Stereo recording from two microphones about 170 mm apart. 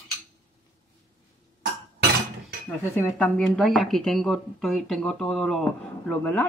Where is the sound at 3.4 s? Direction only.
Centre (ahead or behind).